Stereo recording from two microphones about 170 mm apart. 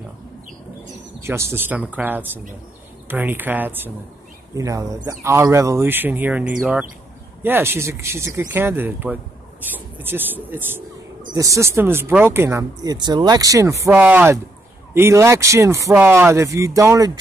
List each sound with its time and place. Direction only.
1.2 s speech: 15° right (ahead or behind)